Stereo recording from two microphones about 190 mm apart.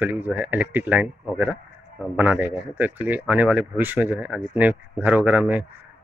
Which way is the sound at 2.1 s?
10° right (ahead or behind).